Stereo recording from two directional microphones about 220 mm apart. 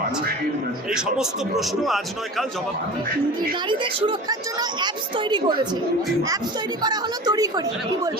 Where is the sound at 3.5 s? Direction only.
20° right (ahead or behind).